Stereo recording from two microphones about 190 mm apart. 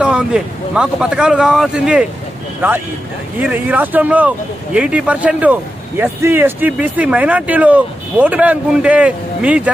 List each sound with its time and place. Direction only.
0.0 s speech: 5° right (ahead or behind)
3.3 s speech: 10° right (ahead or behind)